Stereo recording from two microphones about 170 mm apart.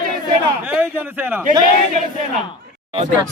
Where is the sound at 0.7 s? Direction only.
10° right (ahead or behind).